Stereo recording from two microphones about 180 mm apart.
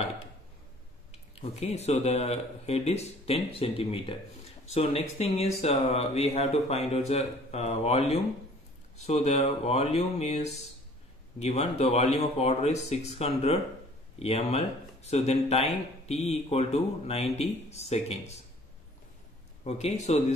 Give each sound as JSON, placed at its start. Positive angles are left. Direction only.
{"t": 1.3, "sound": "speech", "side_deg": 35}
{"t": 19.6, "sound": "speech", "side_deg": 35}